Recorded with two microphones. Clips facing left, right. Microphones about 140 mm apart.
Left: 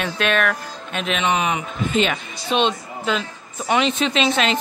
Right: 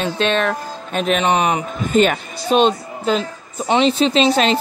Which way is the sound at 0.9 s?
40° right (ahead or behind).